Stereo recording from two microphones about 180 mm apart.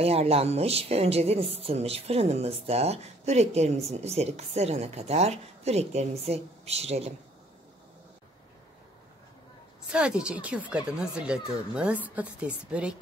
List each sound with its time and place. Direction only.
0.0 s a woman's voice: 35° right (ahead or behind)
9.8 s a woman's voice: 5° right (ahead or behind)